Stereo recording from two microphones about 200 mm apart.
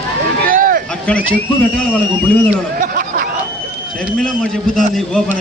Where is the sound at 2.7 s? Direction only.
45° right (ahead or behind).